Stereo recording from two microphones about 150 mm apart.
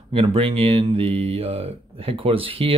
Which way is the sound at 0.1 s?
40° right (ahead or behind).